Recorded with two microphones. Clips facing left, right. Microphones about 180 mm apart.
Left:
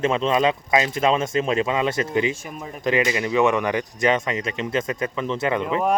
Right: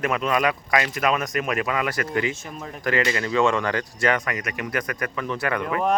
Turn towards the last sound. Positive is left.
turn(degrees=20)  # may be behind; listen again after turning